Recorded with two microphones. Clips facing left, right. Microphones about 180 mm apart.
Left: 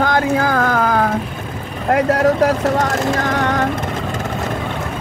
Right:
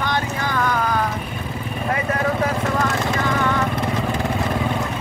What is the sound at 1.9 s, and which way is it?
Speech, 75° left (ahead or behind).